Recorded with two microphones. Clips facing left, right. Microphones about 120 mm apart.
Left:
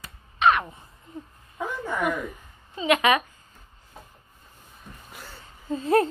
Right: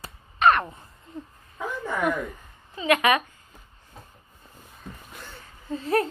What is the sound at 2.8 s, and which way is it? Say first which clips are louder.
Speech: even; 20° left (ahead or behind).